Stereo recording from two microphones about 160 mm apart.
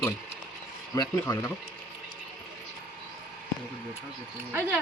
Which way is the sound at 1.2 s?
15° left (ahead or behind).